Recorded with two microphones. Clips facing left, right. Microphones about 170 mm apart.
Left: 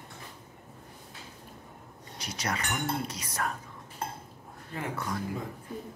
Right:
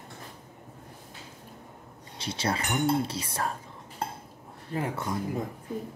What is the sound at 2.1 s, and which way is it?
Speech, 30° right (ahead or behind).